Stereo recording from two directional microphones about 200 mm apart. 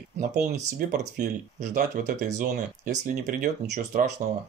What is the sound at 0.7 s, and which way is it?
Speech, 40° right (ahead or behind).